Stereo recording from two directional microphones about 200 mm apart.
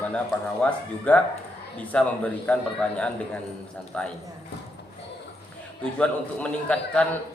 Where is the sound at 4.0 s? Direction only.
5° left (ahead or behind).